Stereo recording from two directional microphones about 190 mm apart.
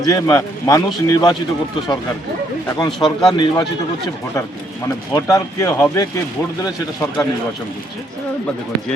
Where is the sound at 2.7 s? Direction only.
20° left (ahead or behind).